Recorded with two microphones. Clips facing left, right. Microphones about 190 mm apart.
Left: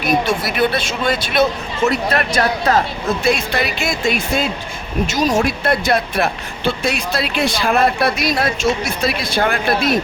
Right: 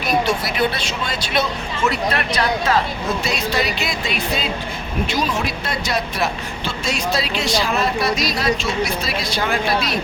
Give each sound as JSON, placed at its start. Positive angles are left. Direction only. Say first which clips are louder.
{"t": 0.8, "sound": "speech", "louder": "left 6 dB", "side_deg": 50}
{"t": 3.2, "sound": "speech", "louder": "left 5 dB", "side_deg": 55}